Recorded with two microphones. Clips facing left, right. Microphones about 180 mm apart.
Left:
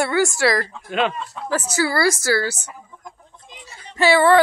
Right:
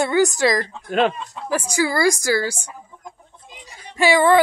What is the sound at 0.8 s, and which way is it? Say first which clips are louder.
Speech: right 4 dB; 40° right (ahead or behind).